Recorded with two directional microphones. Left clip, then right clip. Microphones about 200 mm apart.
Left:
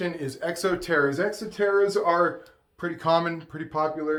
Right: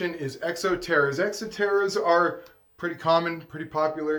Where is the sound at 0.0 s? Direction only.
25° left (ahead or behind).